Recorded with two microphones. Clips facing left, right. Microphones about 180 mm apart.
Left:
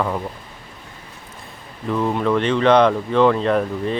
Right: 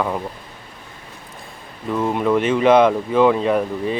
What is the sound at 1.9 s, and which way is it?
Speech, 5° right (ahead or behind).